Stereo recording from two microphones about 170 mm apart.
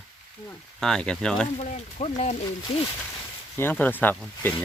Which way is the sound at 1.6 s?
40° left (ahead or behind).